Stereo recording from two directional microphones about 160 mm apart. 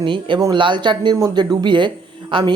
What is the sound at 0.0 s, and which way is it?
Speech, 30° right (ahead or behind).